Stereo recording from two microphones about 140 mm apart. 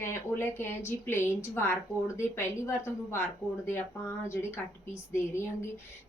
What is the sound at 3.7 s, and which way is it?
A woman's voice, 20° left (ahead or behind).